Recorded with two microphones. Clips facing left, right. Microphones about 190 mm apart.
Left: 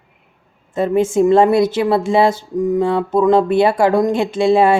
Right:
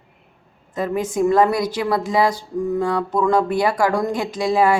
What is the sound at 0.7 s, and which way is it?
Speech, 25° left (ahead or behind).